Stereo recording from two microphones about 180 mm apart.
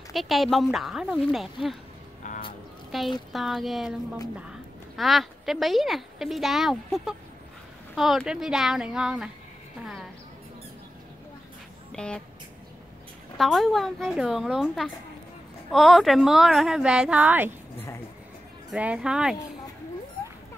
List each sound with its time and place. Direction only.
0.1 s speech: centre (ahead or behind)
2.2 s music: 45° left (ahead or behind)
2.9 s a woman's voice: centre (ahead or behind)
11.9 s speech: 5° left (ahead or behind)
13.4 s speech: centre (ahead or behind)
18.7 s speech: 5° right (ahead or behind)